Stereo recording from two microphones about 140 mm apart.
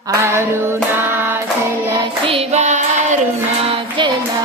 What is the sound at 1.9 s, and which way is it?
Hands, 35° right (ahead or behind).